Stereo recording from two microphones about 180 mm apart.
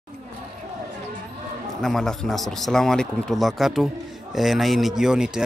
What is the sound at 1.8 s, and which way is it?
A man's voice, centre (ahead or behind).